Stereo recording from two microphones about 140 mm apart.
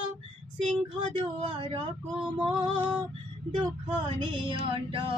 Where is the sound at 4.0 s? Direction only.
35° right (ahead or behind).